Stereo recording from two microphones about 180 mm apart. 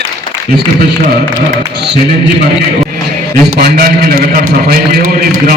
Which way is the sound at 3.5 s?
60° right (ahead or behind).